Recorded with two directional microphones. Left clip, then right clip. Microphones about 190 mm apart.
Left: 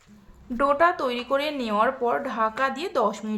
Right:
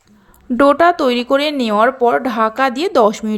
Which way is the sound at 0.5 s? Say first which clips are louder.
Right 10 dB; 35° right (ahead or behind).